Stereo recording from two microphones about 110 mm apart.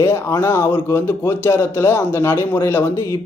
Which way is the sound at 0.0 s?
20° left (ahead or behind).